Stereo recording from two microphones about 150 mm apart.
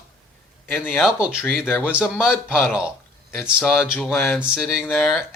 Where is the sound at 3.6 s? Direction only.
15° left (ahead or behind).